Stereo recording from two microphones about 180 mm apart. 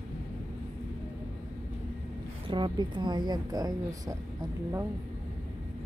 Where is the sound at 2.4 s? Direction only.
25° right (ahead or behind).